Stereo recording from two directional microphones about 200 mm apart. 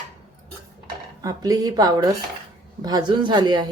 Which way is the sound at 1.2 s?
20° right (ahead or behind).